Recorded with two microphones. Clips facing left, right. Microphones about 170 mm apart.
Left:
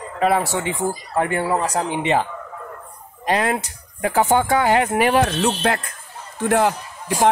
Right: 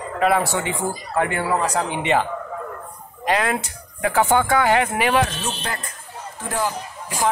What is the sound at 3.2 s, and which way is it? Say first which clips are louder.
Speech: left 1 dB; 35° left (ahead or behind).